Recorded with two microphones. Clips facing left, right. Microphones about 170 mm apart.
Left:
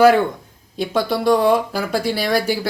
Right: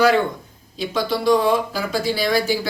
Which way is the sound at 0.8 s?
55° left (ahead or behind).